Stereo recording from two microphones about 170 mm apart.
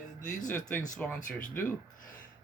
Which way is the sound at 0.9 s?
5° left (ahead or behind).